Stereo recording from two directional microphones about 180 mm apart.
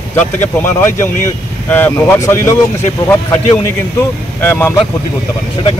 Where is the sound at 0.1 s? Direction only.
10° left (ahead or behind).